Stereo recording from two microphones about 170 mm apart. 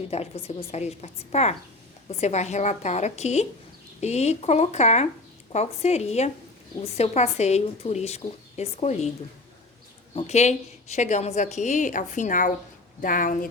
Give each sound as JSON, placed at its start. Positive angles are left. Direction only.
{"t": 0.1, "sound": "a woman's voice", "side_deg": 35}
{"t": 10.2, "sound": "a woman's voice", "side_deg": 40}